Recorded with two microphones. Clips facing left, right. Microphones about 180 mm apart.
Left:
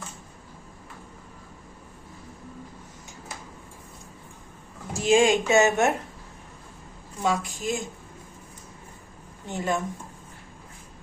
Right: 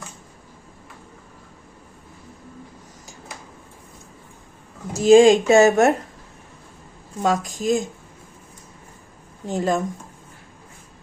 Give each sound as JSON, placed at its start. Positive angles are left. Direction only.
{"t": 4.9, "sound": "speech", "side_deg": -35}
{"t": 7.2, "sound": "speech", "side_deg": -40}
{"t": 9.5, "sound": "speech", "side_deg": -40}